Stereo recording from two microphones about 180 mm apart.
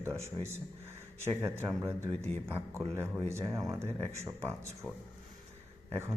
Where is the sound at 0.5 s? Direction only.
15° right (ahead or behind).